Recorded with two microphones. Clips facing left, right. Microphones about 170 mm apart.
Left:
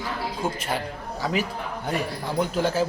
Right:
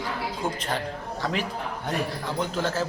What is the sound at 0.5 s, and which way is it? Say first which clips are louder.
A man's voice: left 1 dB; 5° left (ahead or behind).